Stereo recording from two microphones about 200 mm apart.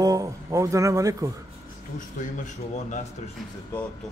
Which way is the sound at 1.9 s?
40° left (ahead or behind).